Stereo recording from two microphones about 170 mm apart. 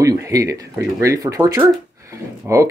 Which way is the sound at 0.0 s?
20° right (ahead or behind).